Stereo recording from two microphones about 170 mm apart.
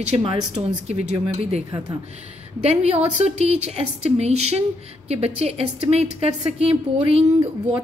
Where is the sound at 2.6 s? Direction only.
40° right (ahead or behind).